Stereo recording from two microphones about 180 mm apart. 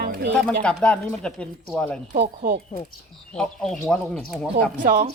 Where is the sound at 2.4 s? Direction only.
50° right (ahead or behind).